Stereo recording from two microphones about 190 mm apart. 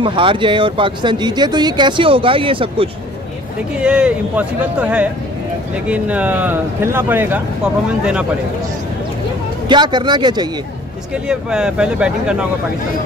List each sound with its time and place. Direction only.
0.0 s speech: 25° right (ahead or behind)
3.8 s speech: 5° right (ahead or behind)
9.7 s speech: 25° right (ahead or behind)
11.2 s speech: 5° right (ahead or behind)